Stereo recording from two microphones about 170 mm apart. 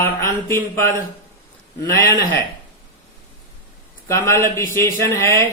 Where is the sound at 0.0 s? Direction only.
15° left (ahead or behind).